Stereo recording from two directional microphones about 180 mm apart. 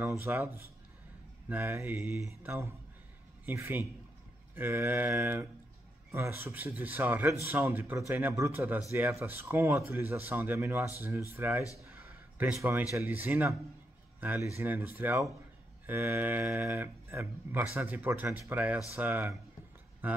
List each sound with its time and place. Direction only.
0.0 s speech: 15° right (ahead or behind)
11.9 s a sound: 10° right (ahead or behind)
12.9 s speech: 10° right (ahead or behind)